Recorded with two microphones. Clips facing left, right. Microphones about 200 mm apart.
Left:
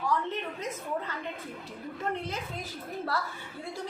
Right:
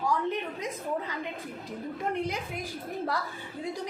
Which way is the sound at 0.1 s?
15° right (ahead or behind).